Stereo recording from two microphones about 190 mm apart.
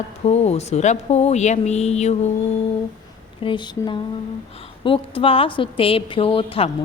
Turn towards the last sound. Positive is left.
turn(degrees=30)  # may be behind; listen again after turning